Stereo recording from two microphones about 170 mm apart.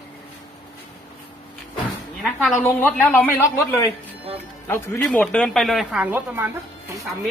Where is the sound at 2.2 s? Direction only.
Centre (ahead or behind).